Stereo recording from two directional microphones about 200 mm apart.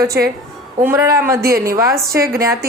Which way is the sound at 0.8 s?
15° right (ahead or behind).